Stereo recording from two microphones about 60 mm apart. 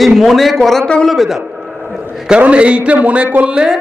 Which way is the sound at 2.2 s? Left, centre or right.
Centre.